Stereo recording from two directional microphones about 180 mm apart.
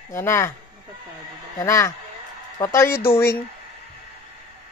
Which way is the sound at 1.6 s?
15° left (ahead or behind).